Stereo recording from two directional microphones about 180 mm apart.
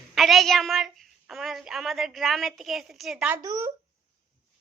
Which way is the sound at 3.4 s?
20° right (ahead or behind).